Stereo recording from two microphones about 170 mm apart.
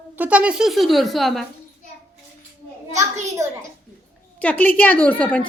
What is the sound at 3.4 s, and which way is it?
Speech, 15° right (ahead or behind).